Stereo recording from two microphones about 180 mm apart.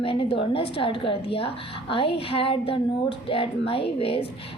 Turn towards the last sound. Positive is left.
turn(degrees=30)  # may be behind; listen again after turning